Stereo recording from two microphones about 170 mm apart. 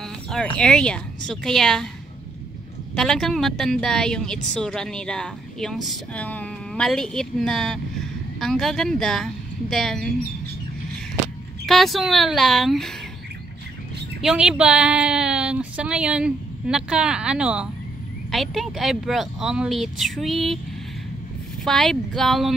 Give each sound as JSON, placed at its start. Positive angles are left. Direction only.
{"t": 0.3, "sound": "a woman's voice", "side_deg": 5}
{"t": 3.0, "sound": "a woman's voice", "side_deg": 0}
{"t": 11.6, "sound": "a woman's voice", "side_deg": 0}
{"t": 14.2, "sound": "a woman's voice", "side_deg": -5}
{"t": 21.6, "sound": "a woman's voice", "side_deg": 5}